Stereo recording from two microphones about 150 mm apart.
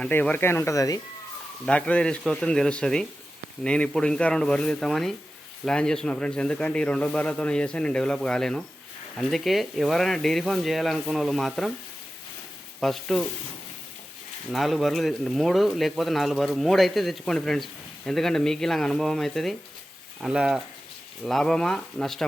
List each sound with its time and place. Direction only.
0.0 s speech: 10° left (ahead or behind)
1.6 s speech: 5° left (ahead or behind)
12.8 s speech: centre (ahead or behind)
14.5 s speech: centre (ahead or behind)